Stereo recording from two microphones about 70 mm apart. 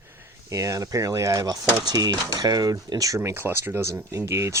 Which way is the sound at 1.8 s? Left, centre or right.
Right.